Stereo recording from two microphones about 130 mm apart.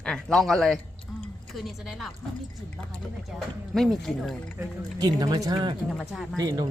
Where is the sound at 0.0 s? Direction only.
5° left (ahead or behind).